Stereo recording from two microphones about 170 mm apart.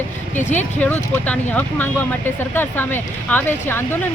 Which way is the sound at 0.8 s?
10° left (ahead or behind).